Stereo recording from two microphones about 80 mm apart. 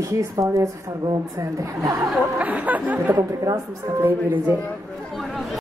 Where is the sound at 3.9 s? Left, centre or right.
Right.